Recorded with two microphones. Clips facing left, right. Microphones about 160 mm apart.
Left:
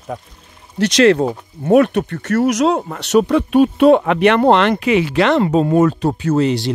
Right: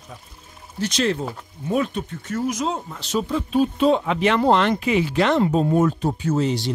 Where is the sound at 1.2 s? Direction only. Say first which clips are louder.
Left 10 dB; 50° left (ahead or behind).